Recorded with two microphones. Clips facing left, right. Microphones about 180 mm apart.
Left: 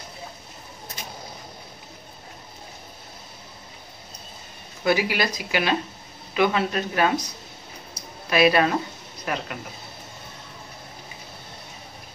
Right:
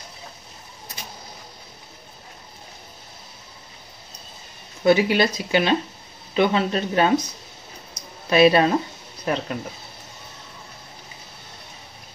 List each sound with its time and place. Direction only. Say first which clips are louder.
4.8 s speech: right 5 dB; 25° right (ahead or behind)
8.3 s speech: right 3 dB; 25° right (ahead or behind)